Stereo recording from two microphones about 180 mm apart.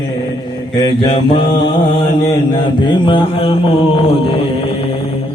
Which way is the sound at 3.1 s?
30° left (ahead or behind).